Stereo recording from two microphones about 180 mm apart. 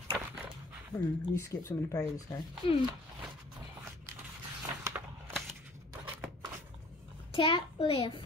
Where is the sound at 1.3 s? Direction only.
15° left (ahead or behind).